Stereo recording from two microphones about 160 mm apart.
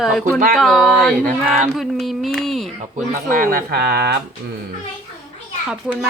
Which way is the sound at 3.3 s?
60° right (ahead or behind).